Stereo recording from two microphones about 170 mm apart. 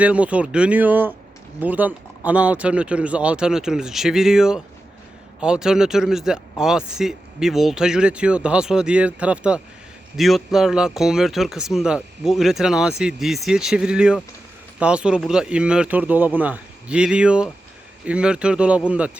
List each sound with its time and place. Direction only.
0.0 s speech: 10° right (ahead or behind)